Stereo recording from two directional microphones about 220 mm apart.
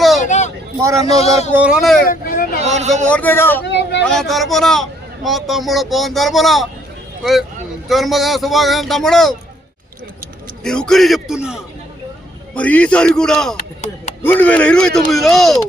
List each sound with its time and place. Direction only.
0.2 s vehicle: 35° left (ahead or behind)
1.0 s speech: 30° left (ahead or behind)
1.5 s speech: 5° right (ahead or behind)
2.0 s speech: 40° left (ahead or behind)
2.6 s speech: 30° right (ahead or behind)
3.1 s speech: 10° left (ahead or behind)
3.6 s vehicle: 50° left (ahead or behind)
4.0 s speech: centre (ahead or behind)
7.9 s speech: centre (ahead or behind)
10.6 s speech: 5° left (ahead or behind)